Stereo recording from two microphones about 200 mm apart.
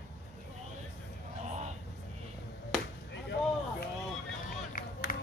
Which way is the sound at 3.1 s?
60° left (ahead or behind).